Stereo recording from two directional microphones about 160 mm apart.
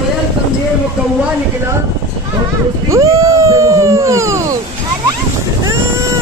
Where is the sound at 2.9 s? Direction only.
20° right (ahead or behind).